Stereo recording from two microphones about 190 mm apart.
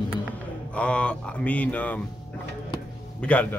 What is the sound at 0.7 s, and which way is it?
Mantra, 5° left (ahead or behind).